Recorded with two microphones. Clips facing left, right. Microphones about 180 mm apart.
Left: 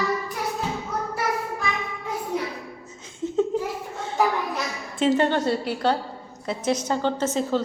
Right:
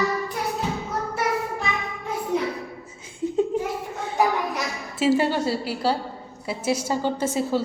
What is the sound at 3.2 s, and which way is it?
Laughter, 10° right (ahead or behind).